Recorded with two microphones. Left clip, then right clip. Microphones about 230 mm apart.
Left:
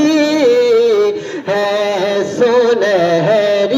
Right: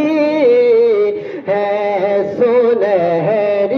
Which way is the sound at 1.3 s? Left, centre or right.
Left.